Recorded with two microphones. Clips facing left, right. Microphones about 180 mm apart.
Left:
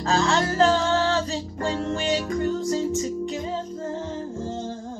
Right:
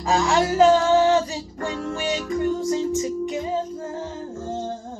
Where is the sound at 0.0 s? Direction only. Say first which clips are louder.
Right 2 dB; 10° right (ahead or behind).